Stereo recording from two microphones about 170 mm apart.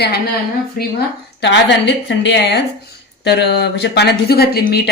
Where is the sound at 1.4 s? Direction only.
90° left.